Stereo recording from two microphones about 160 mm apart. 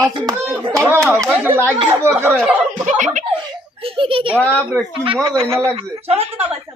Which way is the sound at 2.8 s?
50° right (ahead or behind).